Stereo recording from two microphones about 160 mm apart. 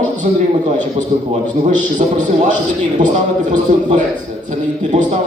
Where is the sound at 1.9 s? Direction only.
50° right (ahead or behind).